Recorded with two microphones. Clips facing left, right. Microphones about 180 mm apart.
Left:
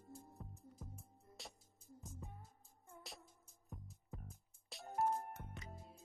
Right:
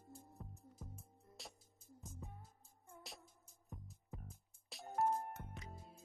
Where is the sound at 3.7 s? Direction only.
Centre (ahead or behind).